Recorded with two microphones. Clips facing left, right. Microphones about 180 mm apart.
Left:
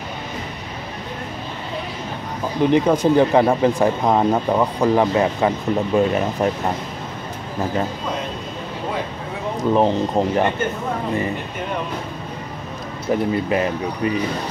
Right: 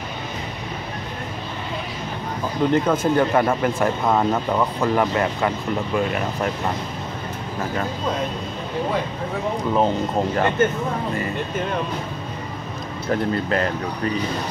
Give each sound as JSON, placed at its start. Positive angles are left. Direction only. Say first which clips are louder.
{"t": 2.6, "sound": "speech", "louder": "left 3 dB", "side_deg": 15}
{"t": 9.8, "sound": "speech", "louder": "left 3 dB", "side_deg": 15}
{"t": 13.1, "sound": "speech", "louder": "left 2 dB", "side_deg": 10}